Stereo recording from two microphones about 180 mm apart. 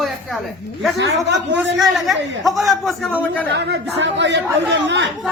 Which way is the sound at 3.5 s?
75° right (ahead or behind).